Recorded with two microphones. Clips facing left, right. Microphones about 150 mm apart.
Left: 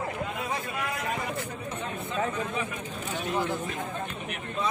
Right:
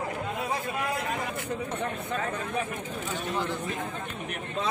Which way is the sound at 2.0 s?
55° right (ahead or behind).